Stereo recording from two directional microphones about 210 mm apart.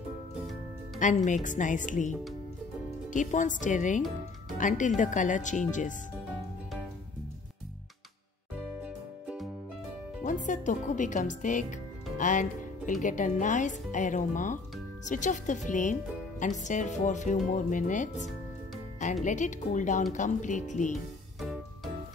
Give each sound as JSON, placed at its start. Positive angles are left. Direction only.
{"t": 0.9, "sound": "speech", "side_deg": 35}
{"t": 8.8, "sound": "music", "side_deg": -5}
{"t": 10.2, "sound": "speech", "side_deg": 35}
{"t": 21.4, "sound": "music", "side_deg": 0}